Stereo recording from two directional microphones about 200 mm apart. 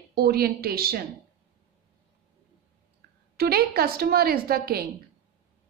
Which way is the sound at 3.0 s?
50° right (ahead or behind).